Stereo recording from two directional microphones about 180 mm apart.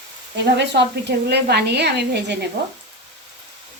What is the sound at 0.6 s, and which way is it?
A woman's voice, 70° right (ahead or behind).